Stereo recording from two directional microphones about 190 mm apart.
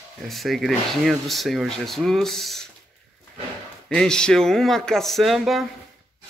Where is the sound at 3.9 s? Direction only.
5° left (ahead or behind).